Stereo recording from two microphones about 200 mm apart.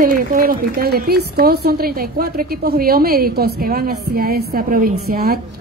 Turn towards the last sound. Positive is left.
turn(degrees=-50)  # may be behind; listen again after turning